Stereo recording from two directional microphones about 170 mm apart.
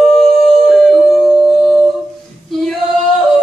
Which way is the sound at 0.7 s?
Centre (ahead or behind).